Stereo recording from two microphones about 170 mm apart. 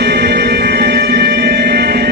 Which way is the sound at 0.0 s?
70° right (ahead or behind).